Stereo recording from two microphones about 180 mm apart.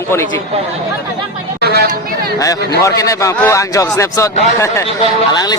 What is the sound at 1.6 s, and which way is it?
Chatter, 60° right (ahead or behind).